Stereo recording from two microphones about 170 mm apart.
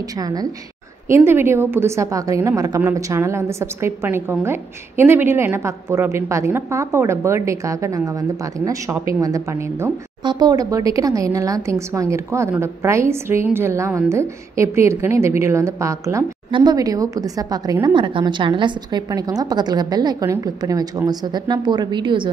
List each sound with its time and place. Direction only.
0.2 s a woman's voice: 20° right (ahead or behind)